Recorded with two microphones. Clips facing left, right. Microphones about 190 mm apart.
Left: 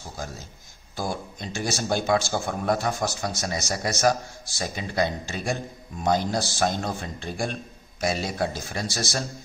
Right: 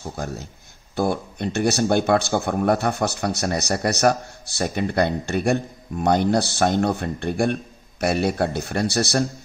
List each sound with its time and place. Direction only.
0.2 s a man's voice: 65° right (ahead or behind)